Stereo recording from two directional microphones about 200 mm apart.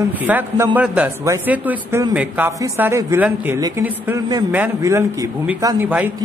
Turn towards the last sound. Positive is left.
turn(degrees=-10)  # may be behind; listen again after turning